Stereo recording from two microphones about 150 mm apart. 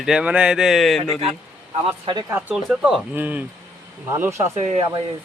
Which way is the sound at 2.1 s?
35° right (ahead or behind).